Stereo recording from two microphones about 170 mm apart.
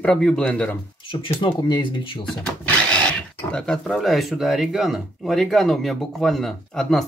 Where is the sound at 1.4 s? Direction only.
25° left (ahead or behind).